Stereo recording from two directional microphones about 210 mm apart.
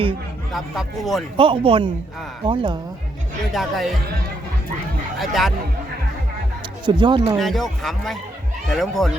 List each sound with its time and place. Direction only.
0.5 s speech: centre (ahead or behind)
1.4 s speech: 25° right (ahead or behind)
3.5 s speech: centre (ahead or behind)
5.1 s speech: centre (ahead or behind)
6.8 s speech: 20° right (ahead or behind)
7.3 s speech: centre (ahead or behind)